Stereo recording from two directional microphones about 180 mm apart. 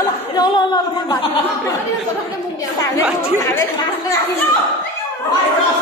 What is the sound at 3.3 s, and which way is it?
Speech, 20° left (ahead or behind).